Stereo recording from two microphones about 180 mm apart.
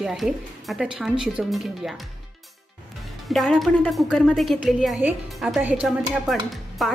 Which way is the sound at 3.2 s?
Centre (ahead or behind).